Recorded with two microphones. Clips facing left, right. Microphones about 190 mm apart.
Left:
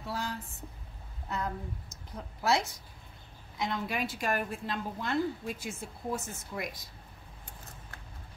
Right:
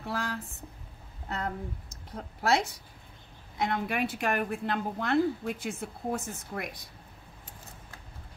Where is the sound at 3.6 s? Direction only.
60° right (ahead or behind).